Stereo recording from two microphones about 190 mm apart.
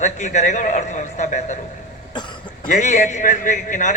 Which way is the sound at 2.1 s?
25° left (ahead or behind).